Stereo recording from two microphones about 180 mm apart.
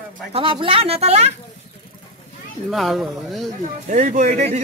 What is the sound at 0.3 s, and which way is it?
Speech, 30° right (ahead or behind).